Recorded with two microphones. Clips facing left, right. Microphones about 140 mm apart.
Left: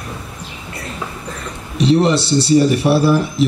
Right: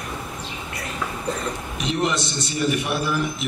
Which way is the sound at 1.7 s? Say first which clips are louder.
Left 11 dB; 35° left (ahead or behind).